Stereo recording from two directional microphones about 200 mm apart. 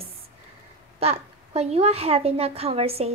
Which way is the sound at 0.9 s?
30° right (ahead or behind).